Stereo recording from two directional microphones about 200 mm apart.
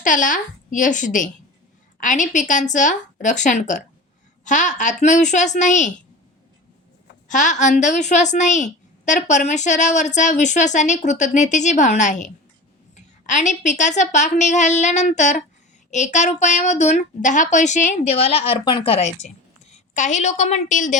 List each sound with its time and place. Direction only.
0.0 s a woman's voice: 40° left (ahead or behind)
7.3 s a woman's voice: 40° left (ahead or behind)